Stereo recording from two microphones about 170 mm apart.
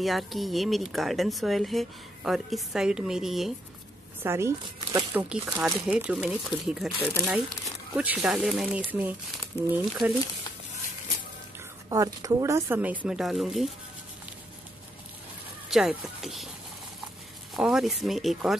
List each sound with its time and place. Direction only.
0.0 s speech: centre (ahead or behind)
4.2 s speech: 15° right (ahead or behind)
5.1 s speech: 5° right (ahead or behind)
9.5 s speech: 15° left (ahead or behind)
11.9 s speech: 20° right (ahead or behind); by 13.7 s centre (ahead or behind)
15.7 s speech: centre (ahead or behind)
17.6 s speech: 5° right (ahead or behind)